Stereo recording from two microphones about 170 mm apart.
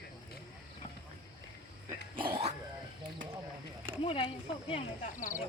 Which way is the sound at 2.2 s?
35° right (ahead or behind).